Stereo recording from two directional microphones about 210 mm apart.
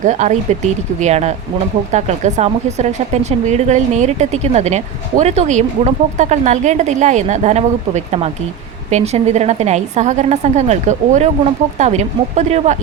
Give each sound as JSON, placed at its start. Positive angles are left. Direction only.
{"t": 0.0, "sound": "speech", "side_deg": -35}